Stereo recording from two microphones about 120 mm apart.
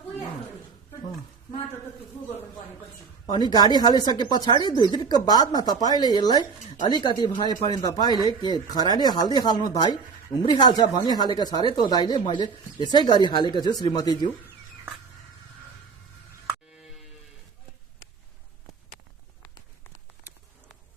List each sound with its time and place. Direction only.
3.3 s speech: 35° left (ahead or behind)